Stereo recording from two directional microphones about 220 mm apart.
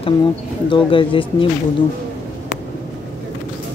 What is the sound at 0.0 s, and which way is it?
Speech, 20° left (ahead or behind).